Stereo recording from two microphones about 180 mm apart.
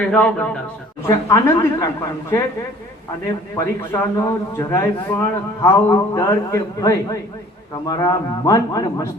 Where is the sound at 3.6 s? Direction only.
15° left (ahead or behind).